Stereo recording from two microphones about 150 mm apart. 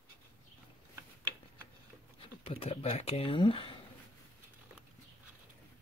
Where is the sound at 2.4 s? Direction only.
40° left (ahead or behind).